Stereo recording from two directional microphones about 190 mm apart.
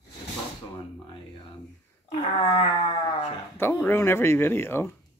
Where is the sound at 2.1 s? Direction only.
30° left (ahead or behind).